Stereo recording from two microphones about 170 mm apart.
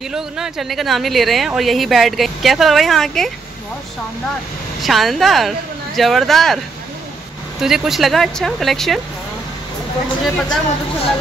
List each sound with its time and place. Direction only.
0.1 s speech: centre (ahead or behind)
4.8 s speech: centre (ahead or behind)
7.6 s speech: centre (ahead or behind)
10.2 s speech: 5° left (ahead or behind)